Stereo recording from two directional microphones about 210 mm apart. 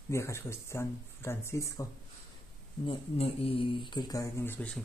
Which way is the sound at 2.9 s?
25° left (ahead or behind).